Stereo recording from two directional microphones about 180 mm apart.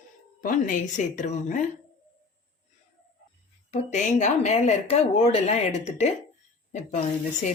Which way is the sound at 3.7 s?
40° left (ahead or behind).